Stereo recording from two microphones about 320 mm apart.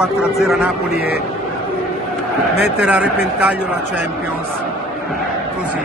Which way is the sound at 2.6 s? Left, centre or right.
Centre.